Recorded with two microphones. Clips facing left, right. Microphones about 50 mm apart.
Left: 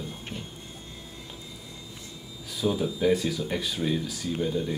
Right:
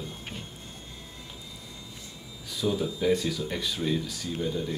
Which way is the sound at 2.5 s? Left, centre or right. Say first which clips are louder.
Left 1 dB; centre.